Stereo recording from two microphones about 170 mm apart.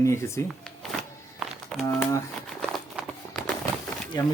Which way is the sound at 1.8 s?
20° left (ahead or behind).